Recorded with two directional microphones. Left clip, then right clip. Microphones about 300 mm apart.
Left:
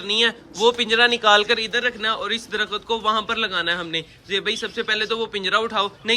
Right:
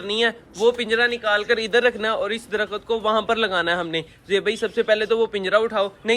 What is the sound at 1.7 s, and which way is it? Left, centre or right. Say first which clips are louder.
A man's voice: right 3 dB; centre.